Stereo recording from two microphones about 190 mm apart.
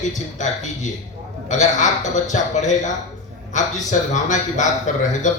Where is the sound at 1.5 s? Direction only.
40° left (ahead or behind).